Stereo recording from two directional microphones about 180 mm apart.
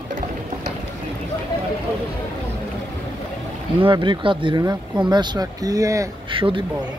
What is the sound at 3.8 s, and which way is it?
Speech, 25° right (ahead or behind).